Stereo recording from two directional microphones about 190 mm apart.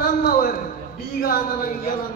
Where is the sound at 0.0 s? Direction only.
50° left (ahead or behind).